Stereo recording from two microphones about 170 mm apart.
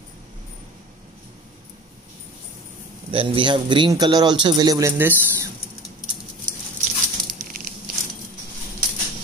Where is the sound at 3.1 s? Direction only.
30° right (ahead or behind); by 5.5 s 15° right (ahead or behind).